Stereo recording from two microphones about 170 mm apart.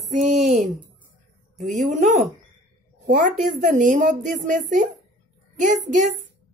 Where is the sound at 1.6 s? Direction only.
45° right (ahead or behind).